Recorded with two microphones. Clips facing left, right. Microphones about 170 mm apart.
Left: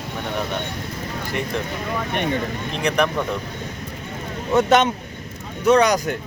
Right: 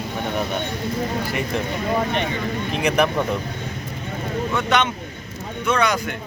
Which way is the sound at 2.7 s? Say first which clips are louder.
Right 1 dB; 5° right (ahead or behind).